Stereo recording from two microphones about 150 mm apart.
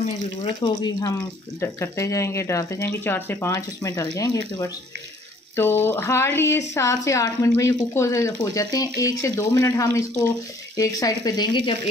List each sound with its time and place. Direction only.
0.6 s speech: 30° left (ahead or behind)